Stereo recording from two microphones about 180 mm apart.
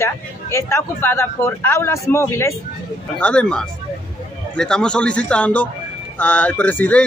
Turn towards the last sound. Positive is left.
turn(degrees=10)  # may be behind; listen again after turning